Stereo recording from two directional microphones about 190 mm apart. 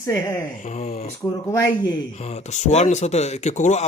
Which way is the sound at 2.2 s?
35° left (ahead or behind).